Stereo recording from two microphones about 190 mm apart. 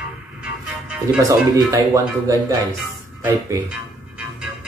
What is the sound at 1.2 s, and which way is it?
Speech, 15° right (ahead or behind).